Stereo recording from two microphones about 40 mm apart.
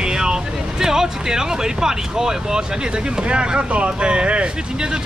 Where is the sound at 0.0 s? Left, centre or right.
Centre.